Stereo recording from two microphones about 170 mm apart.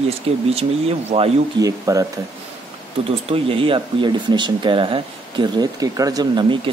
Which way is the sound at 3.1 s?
35° right (ahead or behind).